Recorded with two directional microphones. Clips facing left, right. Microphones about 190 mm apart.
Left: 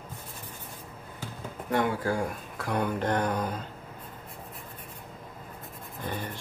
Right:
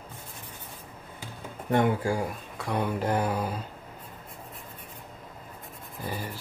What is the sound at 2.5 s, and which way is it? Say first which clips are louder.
Speech: even; centre (ahead or behind).